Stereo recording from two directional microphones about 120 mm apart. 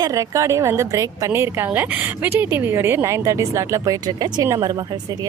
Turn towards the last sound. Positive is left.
turn(degrees=-35)  # may be behind; listen again after turning